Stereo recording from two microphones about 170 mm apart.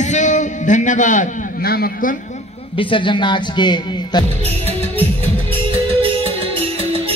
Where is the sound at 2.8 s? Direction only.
30° left (ahead or behind).